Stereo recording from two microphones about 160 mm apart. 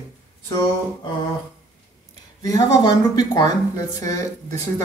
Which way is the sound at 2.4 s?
20° left (ahead or behind).